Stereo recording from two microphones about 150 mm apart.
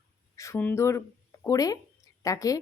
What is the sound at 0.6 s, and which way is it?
Speech, 15° left (ahead or behind).